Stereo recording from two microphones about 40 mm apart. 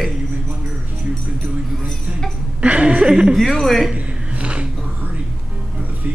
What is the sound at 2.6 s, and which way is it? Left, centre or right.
Speech, right.